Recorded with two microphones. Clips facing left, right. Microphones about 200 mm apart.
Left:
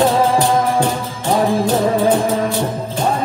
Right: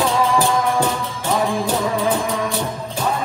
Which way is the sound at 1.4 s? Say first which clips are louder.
Left 5 dB; 35° left (ahead or behind).